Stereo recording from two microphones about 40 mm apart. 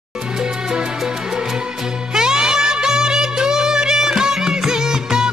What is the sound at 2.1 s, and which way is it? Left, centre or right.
Music, centre.